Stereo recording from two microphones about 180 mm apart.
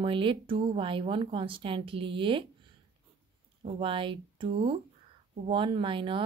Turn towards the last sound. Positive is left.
turn(degrees=-30)  # may be behind; listen again after turning